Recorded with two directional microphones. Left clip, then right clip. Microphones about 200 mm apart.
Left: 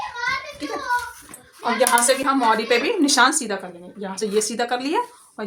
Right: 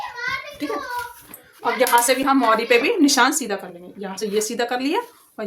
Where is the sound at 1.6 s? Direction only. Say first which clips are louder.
Right 1 dB; 25° right (ahead or behind).